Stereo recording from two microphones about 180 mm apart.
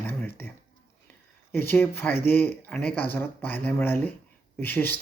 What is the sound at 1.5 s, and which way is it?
Speech, 10° left (ahead or behind).